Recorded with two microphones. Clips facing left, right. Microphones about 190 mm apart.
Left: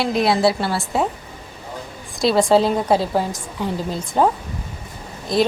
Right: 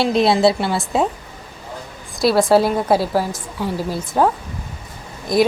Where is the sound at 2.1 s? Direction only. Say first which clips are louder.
Right 1 dB; 5° right (ahead or behind).